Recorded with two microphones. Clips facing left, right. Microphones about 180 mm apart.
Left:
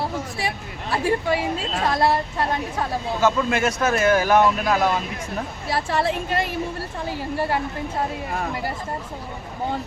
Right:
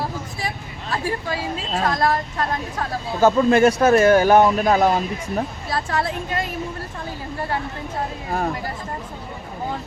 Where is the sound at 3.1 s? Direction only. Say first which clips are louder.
Right 7 dB; 35° right (ahead or behind).